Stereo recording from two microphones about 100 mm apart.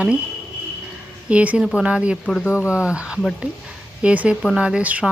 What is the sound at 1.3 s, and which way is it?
Speech, 10° right (ahead or behind).